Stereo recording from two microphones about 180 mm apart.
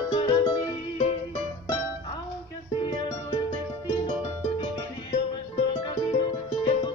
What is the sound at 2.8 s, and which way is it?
Music, 30° left (ahead or behind).